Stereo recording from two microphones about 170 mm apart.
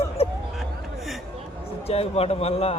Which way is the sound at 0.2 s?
35° left (ahead or behind).